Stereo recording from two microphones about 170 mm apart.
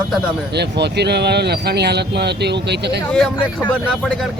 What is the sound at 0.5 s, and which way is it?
Speech, 80° right.